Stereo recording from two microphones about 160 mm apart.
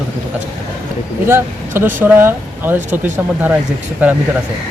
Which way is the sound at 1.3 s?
15° right (ahead or behind).